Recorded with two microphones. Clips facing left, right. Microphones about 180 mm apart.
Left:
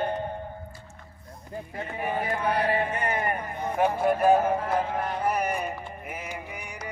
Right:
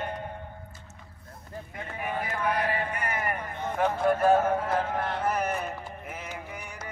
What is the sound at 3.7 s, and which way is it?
Speech, 15° left (ahead or behind).